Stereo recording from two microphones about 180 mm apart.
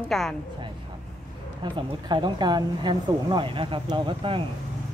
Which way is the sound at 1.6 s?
25° right (ahead or behind).